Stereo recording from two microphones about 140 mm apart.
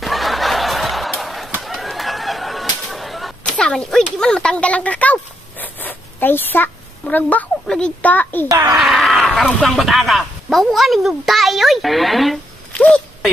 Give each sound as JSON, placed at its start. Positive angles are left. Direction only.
{"t": 0.0, "sound": "snicker", "side_deg": 0}
{"t": 1.6, "sound": "a sound", "side_deg": 0}
{"t": 4.2, "sound": "speech", "side_deg": 5}
{"t": 8.5, "sound": "speech", "side_deg": -30}
{"t": 8.7, "sound": "speech", "side_deg": 0}
{"t": 12.8, "sound": "a sound", "side_deg": 5}